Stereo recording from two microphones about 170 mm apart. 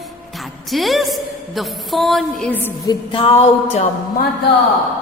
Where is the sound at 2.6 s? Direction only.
10° left (ahead or behind).